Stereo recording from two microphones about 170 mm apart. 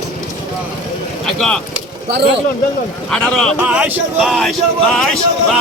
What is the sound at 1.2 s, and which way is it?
Speech, 5° left (ahead or behind).